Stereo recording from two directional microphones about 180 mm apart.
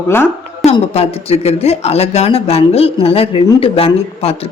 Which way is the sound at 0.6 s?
35° left (ahead or behind).